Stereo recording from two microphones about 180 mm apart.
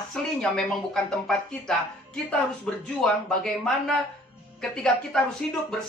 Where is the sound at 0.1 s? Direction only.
5° left (ahead or behind).